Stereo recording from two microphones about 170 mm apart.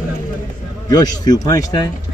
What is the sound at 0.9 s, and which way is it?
Speech, 20° left (ahead or behind).